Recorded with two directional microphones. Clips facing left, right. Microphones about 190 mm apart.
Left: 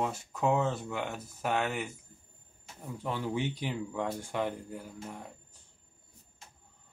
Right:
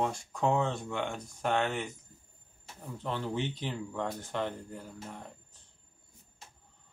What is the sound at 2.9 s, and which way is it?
Speech, 10° left (ahead or behind).